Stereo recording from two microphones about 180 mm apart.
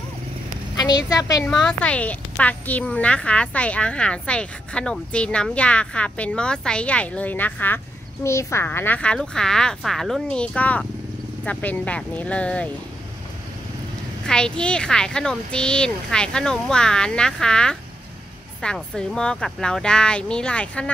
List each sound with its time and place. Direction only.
0.7 s a woman's voice: 20° left (ahead or behind)
1.4 s a woman's voice: 5° left (ahead or behind)
14.2 s speech: 5° left (ahead or behind)